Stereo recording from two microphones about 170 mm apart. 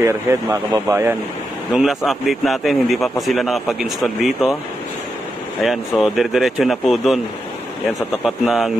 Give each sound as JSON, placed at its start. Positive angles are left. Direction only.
{"t": 0.0, "sound": "speech", "side_deg": -15}
{"t": 1.7, "sound": "a man's voice", "side_deg": 0}
{"t": 5.6, "sound": "a man's voice", "side_deg": 0}
{"t": 8.5, "sound": "a man's voice", "side_deg": 0}